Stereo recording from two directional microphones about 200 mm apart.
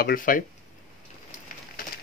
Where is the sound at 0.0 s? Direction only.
45° left (ahead or behind).